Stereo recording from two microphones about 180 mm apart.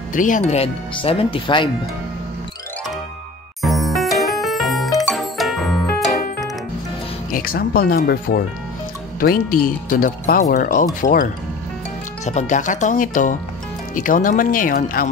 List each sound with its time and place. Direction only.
0.1 s speech: 45° left (ahead or behind); by 1.7 s 30° left (ahead or behind)
3.6 s music: centre (ahead or behind)
7.2 s speech: 50° left (ahead or behind)
12.3 s speech: 40° left (ahead or behind)